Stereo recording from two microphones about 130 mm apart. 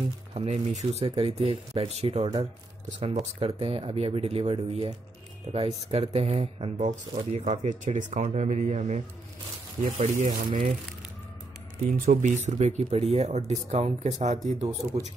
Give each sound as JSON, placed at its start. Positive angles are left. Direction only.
{"t": 0.3, "sound": "speech", "side_deg": -55}
{"t": 7.3, "sound": "speech", "side_deg": -60}
{"t": 11.8, "sound": "speech", "side_deg": -70}